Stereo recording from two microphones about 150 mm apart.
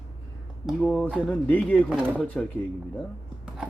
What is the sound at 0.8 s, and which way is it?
Speech, 10° left (ahead or behind).